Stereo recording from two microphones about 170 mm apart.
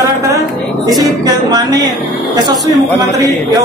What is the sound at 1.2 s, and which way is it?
Music, 20° right (ahead or behind).